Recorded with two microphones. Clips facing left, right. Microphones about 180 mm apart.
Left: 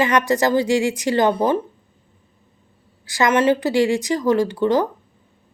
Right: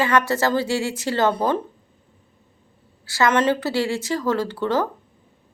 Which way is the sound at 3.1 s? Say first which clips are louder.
Left 2 dB; 15° left (ahead or behind).